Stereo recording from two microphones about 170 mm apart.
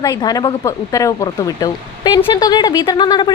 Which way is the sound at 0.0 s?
25° left (ahead or behind).